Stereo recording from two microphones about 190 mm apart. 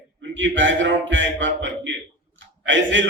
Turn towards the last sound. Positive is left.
turn(degrees=-75)  # may be behind; listen again after turning